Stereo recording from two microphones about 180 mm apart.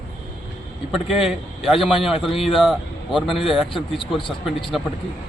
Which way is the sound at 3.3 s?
30° left (ahead or behind).